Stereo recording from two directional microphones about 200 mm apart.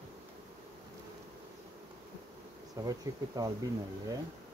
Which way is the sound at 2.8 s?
20° right (ahead or behind).